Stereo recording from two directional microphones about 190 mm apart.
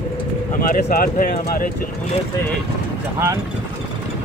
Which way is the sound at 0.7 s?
50° left (ahead or behind).